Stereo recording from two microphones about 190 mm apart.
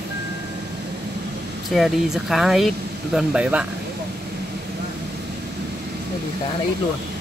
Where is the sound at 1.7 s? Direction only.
Centre (ahead or behind).